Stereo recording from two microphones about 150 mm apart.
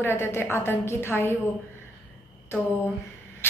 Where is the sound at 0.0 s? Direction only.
15° left (ahead or behind).